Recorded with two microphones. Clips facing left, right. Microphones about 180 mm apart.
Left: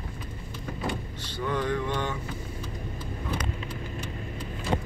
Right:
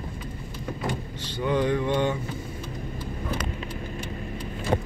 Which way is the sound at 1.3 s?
20° right (ahead or behind).